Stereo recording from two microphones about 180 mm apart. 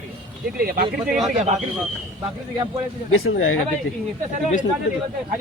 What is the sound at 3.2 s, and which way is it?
Speech, 85° left.